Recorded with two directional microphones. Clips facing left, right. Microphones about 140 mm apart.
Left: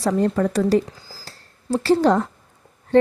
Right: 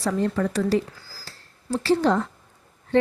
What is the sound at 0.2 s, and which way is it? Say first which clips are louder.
Speech: left 4 dB; 40° left (ahead or behind).